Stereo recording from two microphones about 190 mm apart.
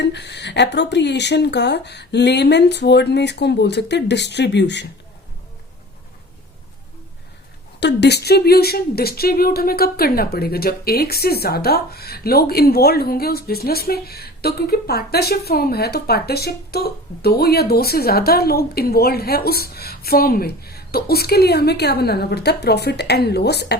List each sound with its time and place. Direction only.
0.0 s speech: 65° left (ahead or behind)
7.8 s speech: 65° left (ahead or behind)